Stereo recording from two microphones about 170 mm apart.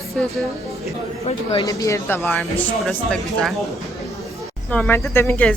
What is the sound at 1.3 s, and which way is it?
Speech, 40° left (ahead or behind).